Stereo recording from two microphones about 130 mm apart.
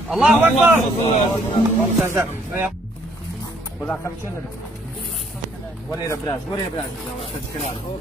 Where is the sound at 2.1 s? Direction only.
15° right (ahead or behind).